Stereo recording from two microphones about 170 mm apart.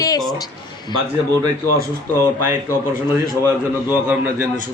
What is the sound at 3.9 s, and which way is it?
Speech, 10° right (ahead or behind).